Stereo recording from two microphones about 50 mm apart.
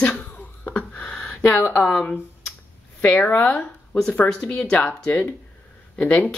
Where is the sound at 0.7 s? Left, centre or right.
Left.